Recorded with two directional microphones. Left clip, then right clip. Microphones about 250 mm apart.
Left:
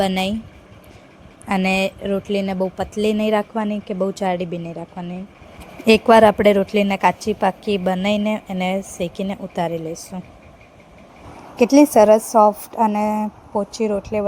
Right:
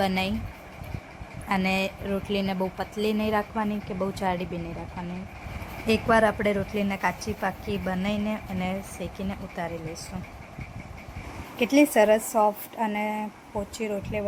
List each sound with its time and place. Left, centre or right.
0.0 s a woman's voice: left
1.5 s a woman's voice: left
5.8 s a woman's voice: left
11.6 s a woman's voice: left